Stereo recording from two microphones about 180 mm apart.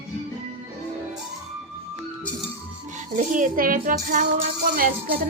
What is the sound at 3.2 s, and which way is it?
A woman's voice, 45° right (ahead or behind).